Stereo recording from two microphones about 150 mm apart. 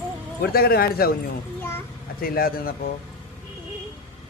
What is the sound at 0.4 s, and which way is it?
Speech, 90° left.